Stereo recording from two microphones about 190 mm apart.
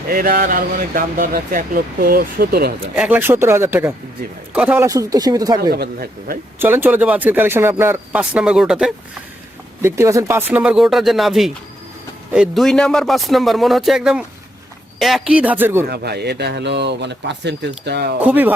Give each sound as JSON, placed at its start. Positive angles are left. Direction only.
{"t": 0.1, "sound": "speech", "side_deg": -50}
{"t": 2.9, "sound": "a man's voice", "side_deg": -10}
{"t": 5.7, "sound": "speech", "side_deg": -55}
{"t": 6.6, "sound": "a man's voice", "side_deg": -10}
{"t": 9.8, "sound": "a man's voice", "side_deg": -15}
{"t": 15.9, "sound": "speech", "side_deg": -60}
{"t": 18.2, "sound": "a man's voice", "side_deg": -10}